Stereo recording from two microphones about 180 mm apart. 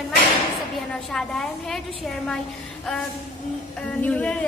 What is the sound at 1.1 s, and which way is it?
Speech, centre (ahead or behind).